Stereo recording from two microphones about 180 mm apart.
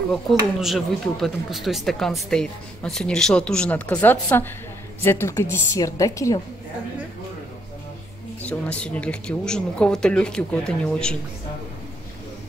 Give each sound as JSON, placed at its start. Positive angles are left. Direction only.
{"t": 0.1, "sound": "a woman's voice", "side_deg": 0}
{"t": 8.4, "sound": "speech", "side_deg": 5}